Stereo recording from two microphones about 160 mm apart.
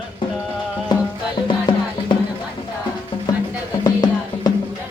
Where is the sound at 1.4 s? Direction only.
30° left (ahead or behind).